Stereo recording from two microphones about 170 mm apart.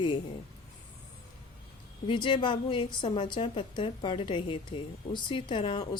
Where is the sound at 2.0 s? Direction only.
30° left (ahead or behind).